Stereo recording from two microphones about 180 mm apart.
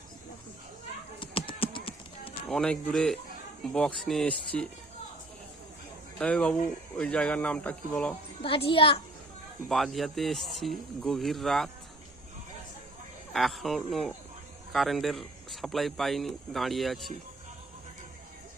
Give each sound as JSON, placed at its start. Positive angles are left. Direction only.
{"t": 1.2, "sound": "clip-clop", "side_deg": 30}
{"t": 2.5, "sound": "speech", "side_deg": 5}
{"t": 6.1, "sound": "speech", "side_deg": 5}
{"t": 8.4, "sound": "a child's voice", "side_deg": 30}
{"t": 9.6, "sound": "speech", "side_deg": 0}
{"t": 13.3, "sound": "speech", "side_deg": 0}